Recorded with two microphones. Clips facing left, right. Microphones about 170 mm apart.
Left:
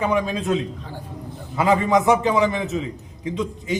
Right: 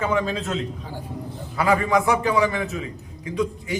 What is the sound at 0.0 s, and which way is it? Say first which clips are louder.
A man's voice: left 2 dB; 15° left (ahead or behind).